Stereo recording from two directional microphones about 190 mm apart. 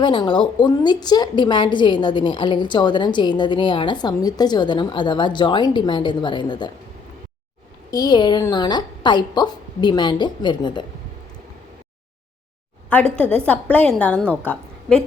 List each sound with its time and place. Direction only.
0.0 s a woman's voice: 25° left (ahead or behind)
7.9 s a woman's voice: 20° left (ahead or behind)
13.1 s a woman's voice: 5° left (ahead or behind)